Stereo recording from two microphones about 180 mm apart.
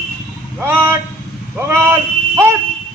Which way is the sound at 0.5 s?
15° right (ahead or behind).